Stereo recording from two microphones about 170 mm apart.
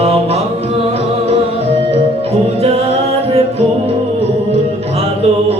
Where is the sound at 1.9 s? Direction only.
35° right (ahead or behind).